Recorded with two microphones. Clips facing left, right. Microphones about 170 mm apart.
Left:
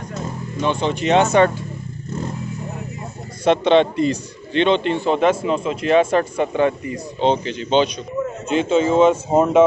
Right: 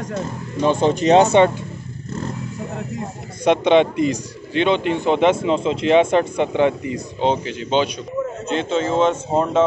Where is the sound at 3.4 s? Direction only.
15° right (ahead or behind).